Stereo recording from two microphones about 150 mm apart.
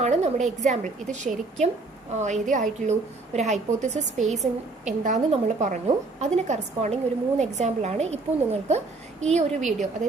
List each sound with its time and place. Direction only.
0.0 s a woman's voice: 50° right (ahead or behind)